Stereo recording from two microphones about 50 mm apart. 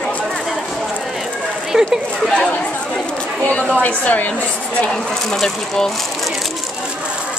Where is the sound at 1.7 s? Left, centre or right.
Centre.